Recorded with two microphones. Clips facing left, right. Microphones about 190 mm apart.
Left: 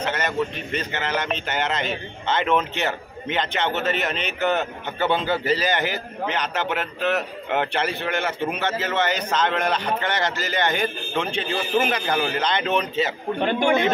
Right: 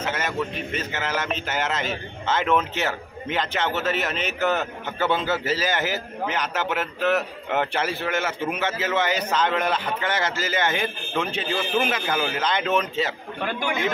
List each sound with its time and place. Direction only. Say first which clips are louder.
0.0 s a man's voice: left 2 dB; 5° right (ahead or behind)
13.4 s speech: left 7 dB; 25° left (ahead or behind)